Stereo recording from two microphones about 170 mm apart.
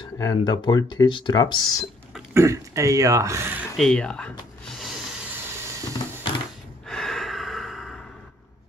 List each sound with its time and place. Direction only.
0.2 s speech: 25° left (ahead or behind)
2.3 s speech: 15° right (ahead or behind)
3.7 s a sound: 5° left (ahead or behind)
6.9 s gasp: centre (ahead or behind)